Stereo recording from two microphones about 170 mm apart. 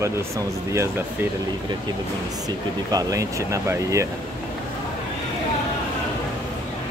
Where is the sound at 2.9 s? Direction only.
20° right (ahead or behind).